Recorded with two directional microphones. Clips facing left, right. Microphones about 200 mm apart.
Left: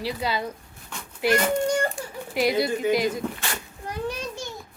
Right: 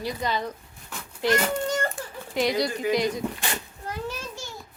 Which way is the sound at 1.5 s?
15° left (ahead or behind).